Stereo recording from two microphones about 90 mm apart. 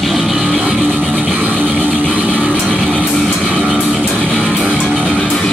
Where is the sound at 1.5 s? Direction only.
20° right (ahead or behind).